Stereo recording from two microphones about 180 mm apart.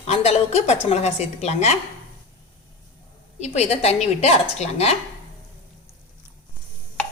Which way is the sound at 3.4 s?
35° left (ahead or behind).